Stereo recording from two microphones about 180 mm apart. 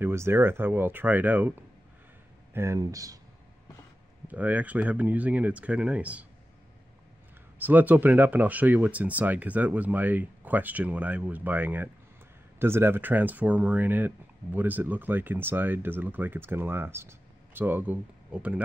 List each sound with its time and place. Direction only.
0.0 s speech: 15° right (ahead or behind)
4.3 s speech: 10° right (ahead or behind)
7.5 s speech: 10° right (ahead or behind)